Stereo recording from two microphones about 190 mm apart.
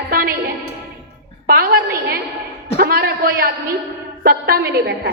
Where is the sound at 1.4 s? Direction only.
50° right (ahead or behind).